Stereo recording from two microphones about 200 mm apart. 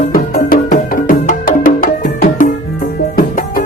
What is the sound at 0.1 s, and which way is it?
Music, 45° left (ahead or behind).